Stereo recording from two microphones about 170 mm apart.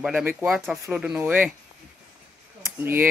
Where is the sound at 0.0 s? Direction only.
10° right (ahead or behind).